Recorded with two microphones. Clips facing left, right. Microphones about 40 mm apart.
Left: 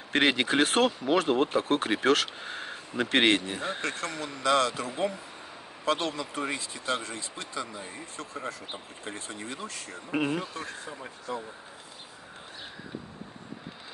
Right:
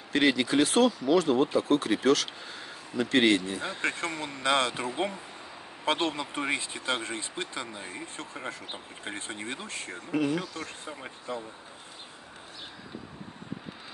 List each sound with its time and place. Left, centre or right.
0.1 s speech: left
4.0 s speech: right
10.1 s speech: left